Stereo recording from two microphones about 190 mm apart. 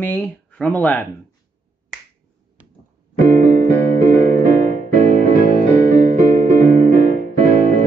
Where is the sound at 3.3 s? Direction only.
40° right (ahead or behind).